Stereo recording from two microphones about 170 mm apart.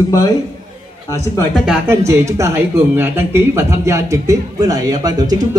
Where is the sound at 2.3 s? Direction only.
15° right (ahead or behind).